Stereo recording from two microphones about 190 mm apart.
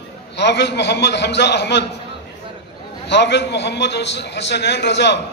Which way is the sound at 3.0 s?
65° left (ahead or behind).